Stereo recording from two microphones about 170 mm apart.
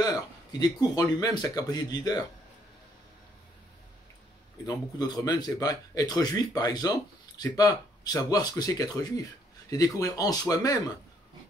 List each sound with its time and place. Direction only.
0.0 s speech: 25° left (ahead or behind)
4.6 s speech: 25° left (ahead or behind)